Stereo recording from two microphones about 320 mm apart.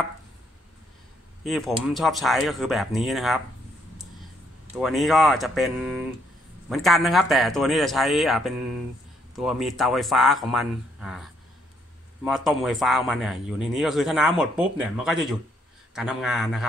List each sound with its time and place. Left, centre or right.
2.0 s a man's voice: centre
4.7 s a man's voice: centre
12.3 s a man's voice: centre